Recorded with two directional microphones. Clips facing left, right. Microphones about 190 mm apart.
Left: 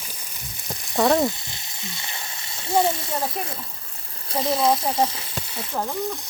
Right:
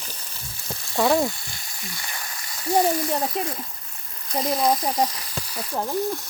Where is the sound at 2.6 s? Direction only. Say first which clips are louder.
Right 1 dB; 25° left (ahead or behind).